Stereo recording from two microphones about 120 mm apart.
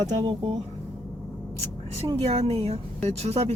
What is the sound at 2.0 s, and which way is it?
Speech, 60° right (ahead or behind).